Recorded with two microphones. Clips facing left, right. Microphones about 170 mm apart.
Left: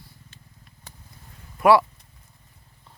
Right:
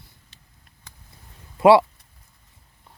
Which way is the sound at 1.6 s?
25° right (ahead or behind).